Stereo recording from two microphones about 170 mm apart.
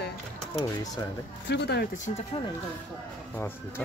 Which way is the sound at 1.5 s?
80° left.